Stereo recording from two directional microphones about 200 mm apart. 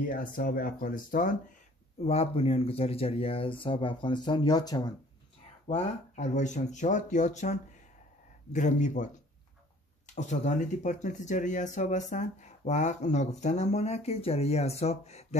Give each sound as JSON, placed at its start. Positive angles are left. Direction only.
{"t": 0.1, "sound": "speech", "side_deg": 45}
{"t": 2.0, "sound": "speech", "side_deg": 30}
{"t": 5.7, "sound": "speech", "side_deg": 35}
{"t": 10.1, "sound": "speech", "side_deg": 35}